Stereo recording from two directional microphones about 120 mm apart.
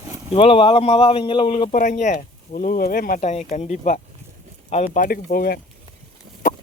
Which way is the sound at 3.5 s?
85° left.